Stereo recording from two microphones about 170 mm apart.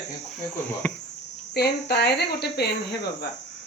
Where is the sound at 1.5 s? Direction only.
70° left (ahead or behind).